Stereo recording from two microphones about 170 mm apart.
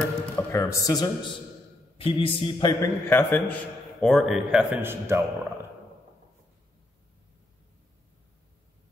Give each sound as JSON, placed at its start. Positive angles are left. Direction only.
{"t": 0.4, "sound": "speech", "side_deg": 15}
{"t": 3.1, "sound": "a man's voice", "side_deg": 10}
{"t": 4.0, "sound": "a man's voice", "side_deg": 0}